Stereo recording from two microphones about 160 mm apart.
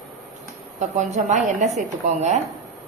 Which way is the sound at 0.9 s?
45° right (ahead or behind).